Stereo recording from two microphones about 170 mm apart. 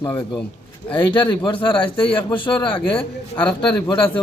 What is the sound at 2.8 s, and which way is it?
Speech, 5° left (ahead or behind).